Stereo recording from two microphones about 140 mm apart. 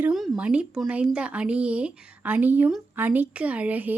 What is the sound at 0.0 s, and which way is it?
Speech, centre (ahead or behind).